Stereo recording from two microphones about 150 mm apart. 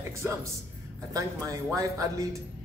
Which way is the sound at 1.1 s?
20° right (ahead or behind).